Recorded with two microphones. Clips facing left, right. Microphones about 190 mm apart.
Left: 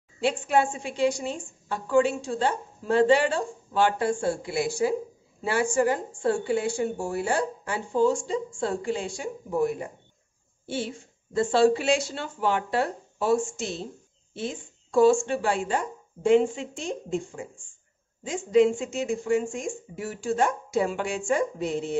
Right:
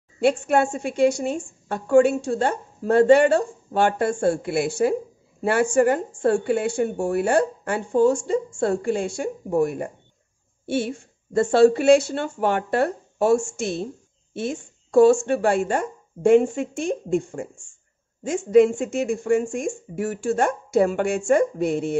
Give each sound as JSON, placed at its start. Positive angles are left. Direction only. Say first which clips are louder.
{"t": 0.2, "sound": "a woman's voice", "louder": "right 5 dB", "side_deg": -50}
{"t": 10.7, "sound": "speech", "louder": "right 7 dB", "side_deg": -60}
{"t": 11.4, "sound": "a woman's voice", "louder": "right 6 dB", "side_deg": -45}
{"t": 14.3, "sound": "a sound", "louder": "right 5 dB", "side_deg": -50}
{"t": 15.0, "sound": "a woman's voice", "louder": "right 4 dB", "side_deg": -55}